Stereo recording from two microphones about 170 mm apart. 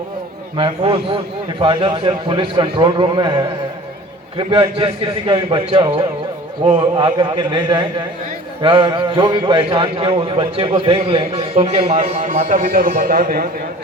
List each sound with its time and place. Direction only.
0.5 s a man's voice: 30° right (ahead or behind); by 13.5 s 60° right (ahead or behind)